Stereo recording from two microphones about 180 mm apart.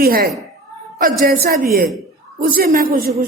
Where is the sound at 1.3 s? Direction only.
60° right (ahead or behind).